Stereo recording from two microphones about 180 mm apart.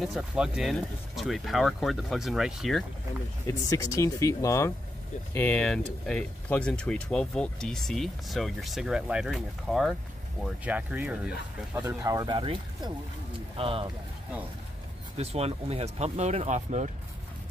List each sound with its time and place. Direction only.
0.0 s speech: centre (ahead or behind)
3.4 s speech: 20° left (ahead or behind); by 13.8 s 30° right (ahead or behind)
15.1 s speech: 35° right (ahead or behind)